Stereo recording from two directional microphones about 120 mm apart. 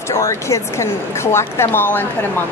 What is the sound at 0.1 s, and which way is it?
A woman's voice, 25° left (ahead or behind).